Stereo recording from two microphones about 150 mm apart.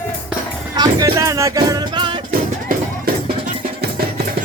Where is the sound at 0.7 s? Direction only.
25° right (ahead or behind).